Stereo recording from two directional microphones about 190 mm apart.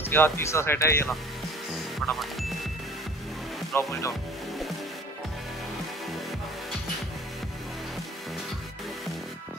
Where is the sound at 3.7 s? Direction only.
15° left (ahead or behind).